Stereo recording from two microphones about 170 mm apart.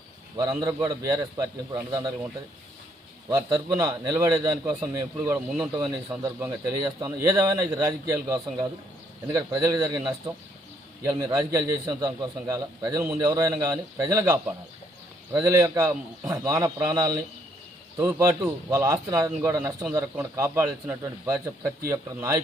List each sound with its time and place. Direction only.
0.5 s a man's voice: 20° right (ahead or behind)
3.2 s a man's voice: 20° right (ahead or behind)